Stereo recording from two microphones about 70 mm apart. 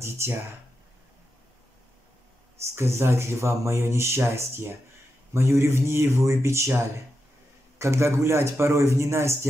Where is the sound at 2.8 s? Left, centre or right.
Right.